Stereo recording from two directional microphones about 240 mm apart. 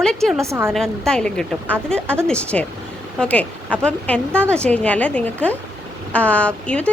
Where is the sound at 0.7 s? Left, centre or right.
Centre.